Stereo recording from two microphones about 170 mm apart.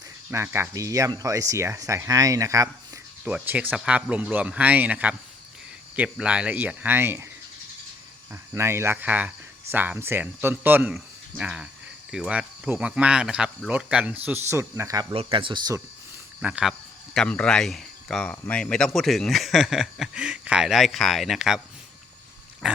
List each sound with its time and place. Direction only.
0.3 s speech: 15° right (ahead or behind)
8.3 s speech: 15° right (ahead or behind)
15.1 s speech: 30° right (ahead or behind)
16.4 s speech: 5° right (ahead or behind)
17.2 s speech: 5° left (ahead or behind)
22.6 s speech: 5° right (ahead or behind)